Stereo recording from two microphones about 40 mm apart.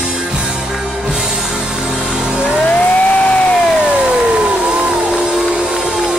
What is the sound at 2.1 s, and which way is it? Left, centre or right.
Music, centre.